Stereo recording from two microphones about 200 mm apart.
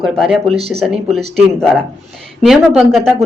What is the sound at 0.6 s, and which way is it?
Speech, 30° right (ahead or behind).